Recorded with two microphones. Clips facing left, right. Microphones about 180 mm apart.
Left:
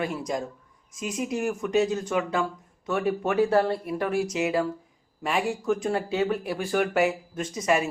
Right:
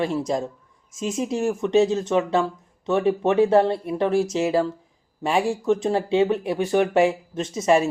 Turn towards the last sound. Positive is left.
turn(degrees=-25)  # may be behind; listen again after turning